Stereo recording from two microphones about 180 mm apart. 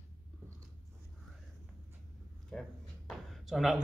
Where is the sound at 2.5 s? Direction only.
5° left (ahead or behind).